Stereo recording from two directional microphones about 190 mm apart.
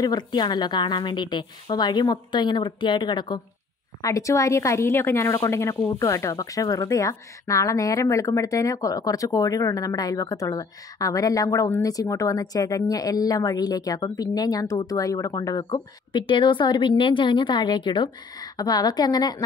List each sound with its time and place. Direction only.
0.0 s a woman's voice: 20° left (ahead or behind)